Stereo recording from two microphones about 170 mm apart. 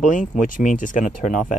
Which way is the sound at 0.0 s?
50° left (ahead or behind).